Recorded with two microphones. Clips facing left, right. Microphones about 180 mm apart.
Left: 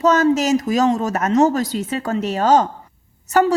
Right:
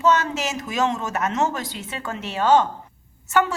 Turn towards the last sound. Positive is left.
turn(degrees=40)  # may be behind; listen again after turning